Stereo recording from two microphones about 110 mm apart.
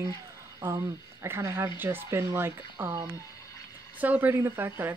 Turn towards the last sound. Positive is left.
turn(degrees=-20)  # may be behind; listen again after turning